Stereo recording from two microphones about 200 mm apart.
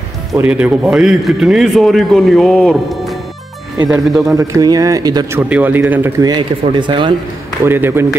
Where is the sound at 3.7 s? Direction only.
20° right (ahead or behind).